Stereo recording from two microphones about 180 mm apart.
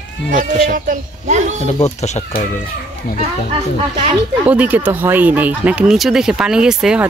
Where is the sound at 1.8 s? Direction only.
40° left (ahead or behind).